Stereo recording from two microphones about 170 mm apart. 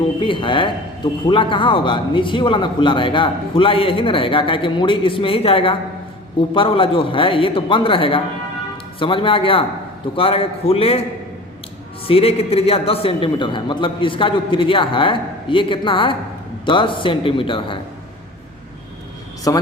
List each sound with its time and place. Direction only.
0.2 s a man's voice: 30° left (ahead or behind)
12.0 s a man's voice: 35° left (ahead or behind)
19.5 s a man's voice: 20° left (ahead or behind)